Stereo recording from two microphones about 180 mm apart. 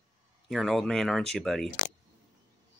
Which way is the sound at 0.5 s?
Centre (ahead or behind).